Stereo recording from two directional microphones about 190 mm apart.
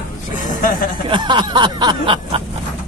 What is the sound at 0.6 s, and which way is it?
Speech, 45° left (ahead or behind).